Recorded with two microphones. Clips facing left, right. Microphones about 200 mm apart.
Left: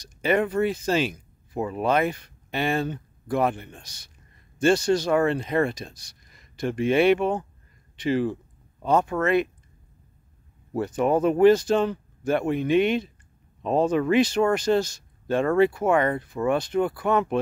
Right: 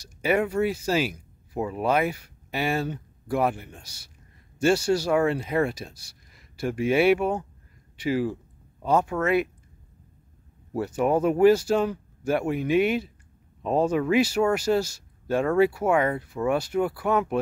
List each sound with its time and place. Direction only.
0.0 s speech: 10° right (ahead or behind)
10.7 s speech: 10° right (ahead or behind)